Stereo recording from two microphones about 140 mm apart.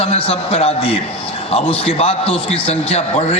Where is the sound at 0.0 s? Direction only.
45° left (ahead or behind).